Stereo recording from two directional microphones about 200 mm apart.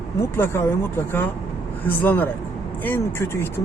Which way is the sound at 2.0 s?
10° left (ahead or behind).